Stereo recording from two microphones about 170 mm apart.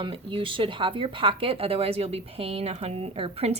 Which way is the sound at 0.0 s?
30° right (ahead or behind).